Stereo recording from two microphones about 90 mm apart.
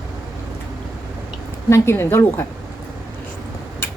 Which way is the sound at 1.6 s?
30° left (ahead or behind).